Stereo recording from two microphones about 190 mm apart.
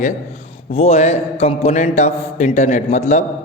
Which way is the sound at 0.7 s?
30° left (ahead or behind).